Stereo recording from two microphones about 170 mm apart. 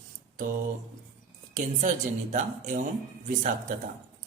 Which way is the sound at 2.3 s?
50° right (ahead or behind).